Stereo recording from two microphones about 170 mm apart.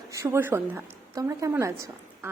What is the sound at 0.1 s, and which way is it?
A woman's voice, 15° right (ahead or behind).